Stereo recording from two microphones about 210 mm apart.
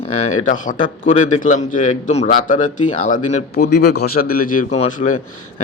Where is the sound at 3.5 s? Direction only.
50° left (ahead or behind).